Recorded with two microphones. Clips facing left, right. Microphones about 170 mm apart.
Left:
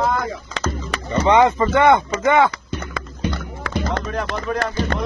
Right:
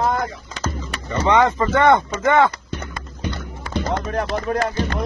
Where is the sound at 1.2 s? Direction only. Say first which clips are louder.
Left 2 dB; 10° left (ahead or behind).